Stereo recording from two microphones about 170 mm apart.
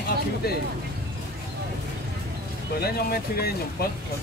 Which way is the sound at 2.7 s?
65° left (ahead or behind).